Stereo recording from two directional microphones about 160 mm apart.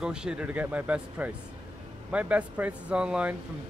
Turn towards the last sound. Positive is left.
turn(degrees=-5)  # may be behind; listen again after turning